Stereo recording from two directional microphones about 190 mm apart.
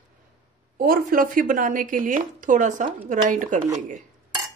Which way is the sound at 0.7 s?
50° right (ahead or behind).